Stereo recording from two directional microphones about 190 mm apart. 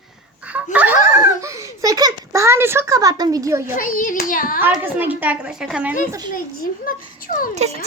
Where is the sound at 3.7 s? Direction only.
45° left (ahead or behind).